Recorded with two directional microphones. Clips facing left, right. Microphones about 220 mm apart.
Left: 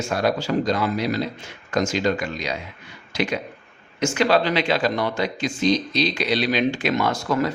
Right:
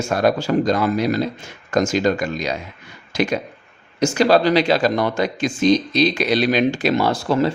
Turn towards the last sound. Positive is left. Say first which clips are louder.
# right 4 dB
turn(degrees=-30)  # may be behind; listen again after turning